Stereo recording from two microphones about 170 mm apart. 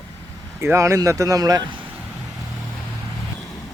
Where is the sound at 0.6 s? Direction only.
15° right (ahead or behind).